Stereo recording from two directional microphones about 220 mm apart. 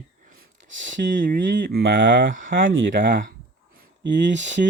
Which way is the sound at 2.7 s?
55° right (ahead or behind).